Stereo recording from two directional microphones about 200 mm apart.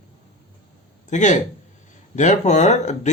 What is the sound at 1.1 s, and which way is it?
Speech, 35° left (ahead or behind).